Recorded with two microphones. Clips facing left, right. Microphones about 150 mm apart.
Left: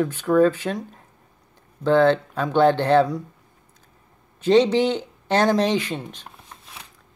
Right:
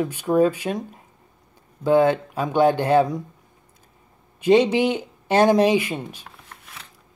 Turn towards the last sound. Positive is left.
turn(degrees=-10)  # may be behind; listen again after turning